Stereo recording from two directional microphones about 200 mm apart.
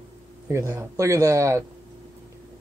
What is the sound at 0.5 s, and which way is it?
Speech, 15° right (ahead or behind).